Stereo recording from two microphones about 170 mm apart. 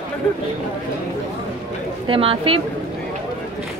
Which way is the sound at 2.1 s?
35° right (ahead or behind).